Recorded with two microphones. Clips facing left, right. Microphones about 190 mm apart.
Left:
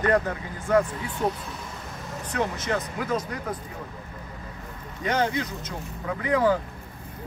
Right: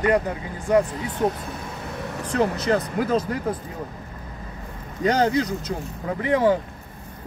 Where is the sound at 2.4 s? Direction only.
35° right (ahead or behind).